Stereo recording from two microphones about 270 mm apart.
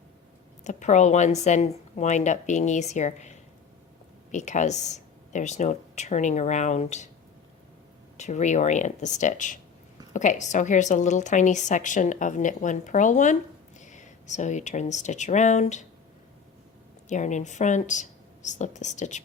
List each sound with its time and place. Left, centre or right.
0.6 s a woman's voice: left
8.2 s a woman's voice: left
17.1 s a woman's voice: left